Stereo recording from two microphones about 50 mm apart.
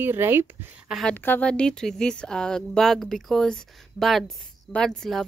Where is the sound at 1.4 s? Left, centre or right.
Left.